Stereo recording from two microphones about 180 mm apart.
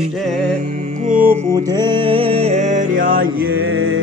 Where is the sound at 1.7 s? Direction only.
25° right (ahead or behind); by 3.3 s 50° right (ahead or behind).